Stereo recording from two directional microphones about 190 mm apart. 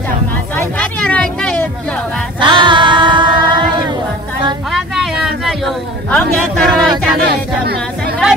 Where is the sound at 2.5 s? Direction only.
25° right (ahead or behind).